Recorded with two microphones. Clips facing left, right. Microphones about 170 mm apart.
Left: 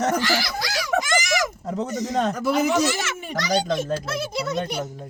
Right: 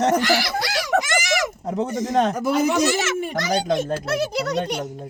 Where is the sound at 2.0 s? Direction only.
50° right (ahead or behind).